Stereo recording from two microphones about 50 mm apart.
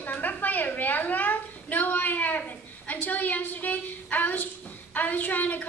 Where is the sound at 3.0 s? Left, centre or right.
Left.